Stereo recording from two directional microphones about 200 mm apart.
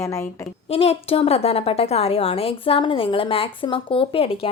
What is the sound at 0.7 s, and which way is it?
A woman's voice, 30° left (ahead or behind).